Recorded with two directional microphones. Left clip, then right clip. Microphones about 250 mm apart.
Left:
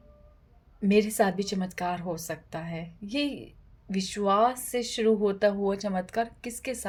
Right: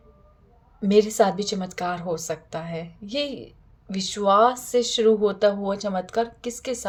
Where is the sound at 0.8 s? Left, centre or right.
Left.